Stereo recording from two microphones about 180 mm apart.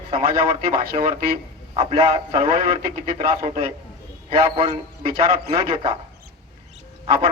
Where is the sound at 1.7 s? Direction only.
35° right (ahead or behind).